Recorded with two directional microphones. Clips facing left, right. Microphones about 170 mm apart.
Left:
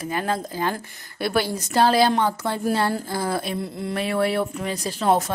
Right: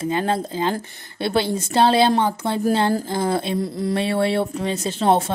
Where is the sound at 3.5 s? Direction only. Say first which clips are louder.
Right 5 dB; 35° right (ahead or behind).